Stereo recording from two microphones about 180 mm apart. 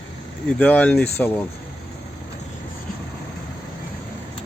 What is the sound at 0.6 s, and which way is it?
Speech, 10° left (ahead or behind).